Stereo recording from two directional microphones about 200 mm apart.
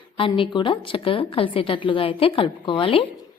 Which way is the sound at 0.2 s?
25° left (ahead or behind).